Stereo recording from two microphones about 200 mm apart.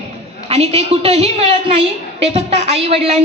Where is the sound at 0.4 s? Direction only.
30° right (ahead or behind).